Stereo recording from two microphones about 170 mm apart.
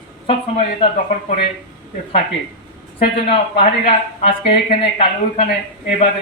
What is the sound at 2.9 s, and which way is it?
Speech, 35° left (ahead or behind).